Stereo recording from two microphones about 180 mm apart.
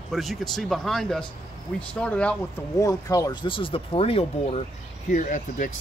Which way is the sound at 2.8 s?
20° left (ahead or behind).